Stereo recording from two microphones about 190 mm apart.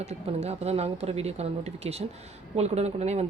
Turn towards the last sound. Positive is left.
turn(degrees=-35)  # may be behind; listen again after turning